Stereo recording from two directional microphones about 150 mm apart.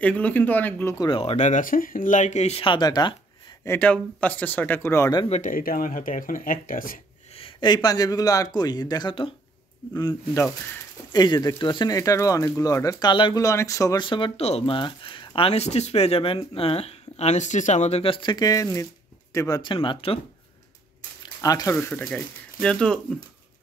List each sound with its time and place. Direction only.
0.0 s speech: 10° left (ahead or behind)
0.9 s speech: 35° left (ahead or behind)
3.6 s speech: 10° left (ahead or behind)
5.3 s speech: 65° left (ahead or behind)
7.3 s a man's voice: 35° left (ahead or behind)
21.4 s speech: 25° left (ahead or behind); by 22.9 s 5° left (ahead or behind)